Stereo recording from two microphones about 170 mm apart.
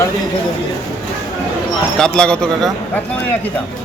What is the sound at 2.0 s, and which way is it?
Speech, 5° left (ahead or behind).